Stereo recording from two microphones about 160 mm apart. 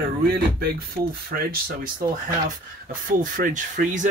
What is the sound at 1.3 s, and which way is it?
Speech, 65° right (ahead or behind).